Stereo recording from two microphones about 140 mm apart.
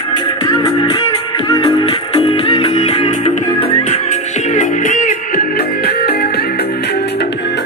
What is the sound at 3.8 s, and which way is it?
Music, 55° left (ahead or behind).